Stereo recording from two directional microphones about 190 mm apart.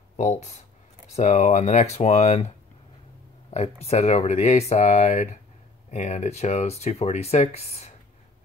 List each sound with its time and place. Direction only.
0.2 s speech: 35° left (ahead or behind)